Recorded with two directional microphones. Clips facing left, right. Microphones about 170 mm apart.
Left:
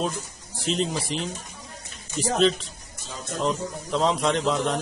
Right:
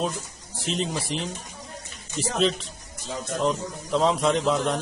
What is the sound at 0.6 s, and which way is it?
Speech, centre (ahead or behind).